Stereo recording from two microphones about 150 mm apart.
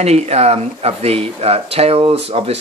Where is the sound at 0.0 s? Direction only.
45° right (ahead or behind).